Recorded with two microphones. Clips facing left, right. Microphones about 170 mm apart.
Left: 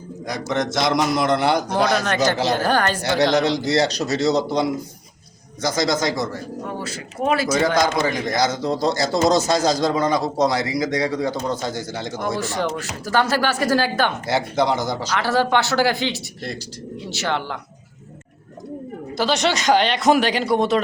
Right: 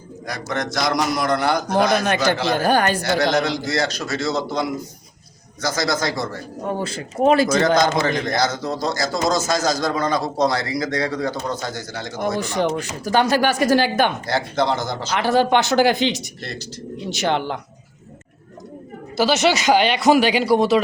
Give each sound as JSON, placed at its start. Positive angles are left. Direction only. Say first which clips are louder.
{"t": 0.3, "sound": "a man's voice", "louder": "left 3 dB", "side_deg": 20}
{"t": 2.6, "sound": "a woman's voice", "louder": "right 2 dB", "side_deg": -15}
{"t": 3.0, "sound": "a man's voice", "louder": "left 1 dB", "side_deg": 35}
{"t": 5.6, "sound": "a man's voice", "louder": "left 2 dB", "side_deg": 20}
{"t": 6.7, "sound": "speech", "louder": "right 4 dB", "side_deg": -30}
{"t": 7.4, "sound": "a man's voice", "louder": "right 2 dB", "side_deg": 10}
{"t": 8.9, "sound": "a man's voice", "louder": "left 3 dB", "side_deg": 30}
{"t": 9.8, "sound": "a man's voice", "louder": "left 2 dB", "side_deg": 20}
{"t": 12.4, "sound": "a woman's voice", "louder": "right 3 dB", "side_deg": -15}
{"t": 14.3, "sound": "a man's voice", "louder": "left 1 dB", "side_deg": 20}
{"t": 15.1, "sound": "speech", "louder": "right 3 dB", "side_deg": -15}
{"t": 19.1, "sound": "speech", "louder": "right 3 dB", "side_deg": -5}